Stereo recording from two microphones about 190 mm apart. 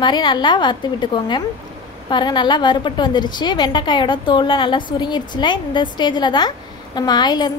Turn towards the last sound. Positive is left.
turn(degrees=20)  # may be behind; listen again after turning